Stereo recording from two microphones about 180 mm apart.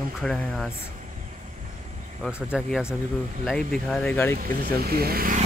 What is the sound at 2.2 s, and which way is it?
Speech, centre (ahead or behind).